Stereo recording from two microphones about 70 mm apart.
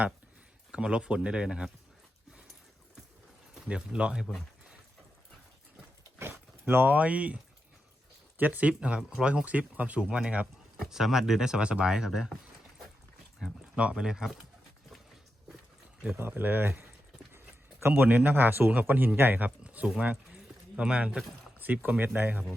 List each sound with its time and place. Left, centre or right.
0.7 s speech: centre
3.7 s speech: centre
6.1 s speech: right
8.4 s speech: right
13.7 s speech: centre
16.1 s a man's voice: right
19.5 s a sound: centre
21.6 s speech: right